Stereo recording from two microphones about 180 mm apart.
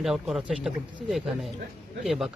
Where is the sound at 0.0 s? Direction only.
Centre (ahead or behind).